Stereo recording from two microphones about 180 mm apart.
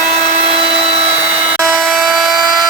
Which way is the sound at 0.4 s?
35° right (ahead or behind).